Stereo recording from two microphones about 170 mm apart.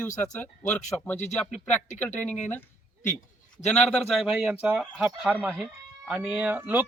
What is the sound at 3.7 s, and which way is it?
A man's voice, 5° left (ahead or behind).